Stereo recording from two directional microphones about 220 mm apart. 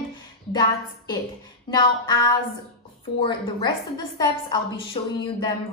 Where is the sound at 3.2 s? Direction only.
20° left (ahead or behind).